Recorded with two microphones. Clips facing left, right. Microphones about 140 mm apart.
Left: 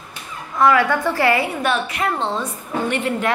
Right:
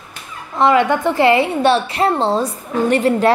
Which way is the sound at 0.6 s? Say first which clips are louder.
Right 2 dB; 25° right (ahead or behind).